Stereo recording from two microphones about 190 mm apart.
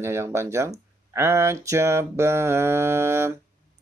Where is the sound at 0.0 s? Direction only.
15° right (ahead or behind).